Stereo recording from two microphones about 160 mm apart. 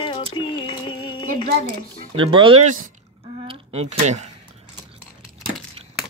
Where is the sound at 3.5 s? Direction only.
40° right (ahead or behind).